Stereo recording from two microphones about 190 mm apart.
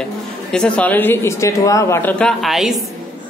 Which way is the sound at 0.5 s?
5° left (ahead or behind).